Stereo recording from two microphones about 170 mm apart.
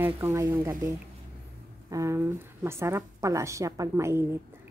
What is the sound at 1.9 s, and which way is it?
A woman's voice, 15° right (ahead or behind).